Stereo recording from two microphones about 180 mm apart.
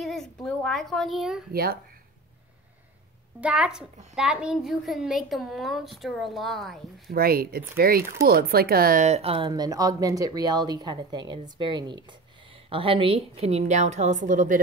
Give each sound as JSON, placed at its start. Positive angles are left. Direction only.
{"t": 0.0, "sound": "a woman's voice", "side_deg": 0}
{"t": 1.5, "sound": "speech", "side_deg": -60}
{"t": 3.3, "sound": "a child's voice", "side_deg": -5}
{"t": 7.1, "sound": "speech", "side_deg": -55}
{"t": 9.0, "sound": "speech", "side_deg": -35}